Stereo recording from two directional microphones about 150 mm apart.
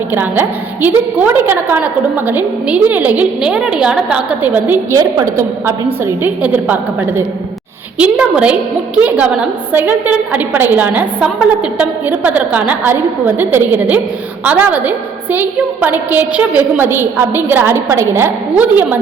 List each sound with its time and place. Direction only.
0.1 s a woman's voice: 15° right (ahead or behind)
4.9 s a woman's voice: 25° right (ahead or behind)
7.9 s a woman's voice: 5° right (ahead or behind)